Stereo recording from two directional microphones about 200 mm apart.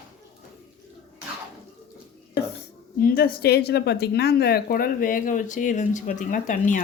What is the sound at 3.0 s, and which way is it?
A woman's voice, 50° left (ahead or behind).